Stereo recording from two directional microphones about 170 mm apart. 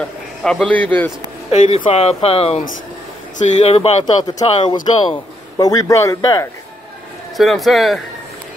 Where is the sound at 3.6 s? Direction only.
35° left (ahead or behind).